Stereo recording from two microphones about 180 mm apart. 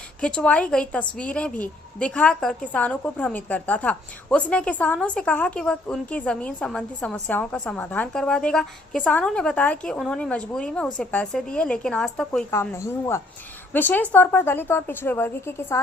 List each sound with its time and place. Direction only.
0.2 s a woman's voice: 5° left (ahead or behind)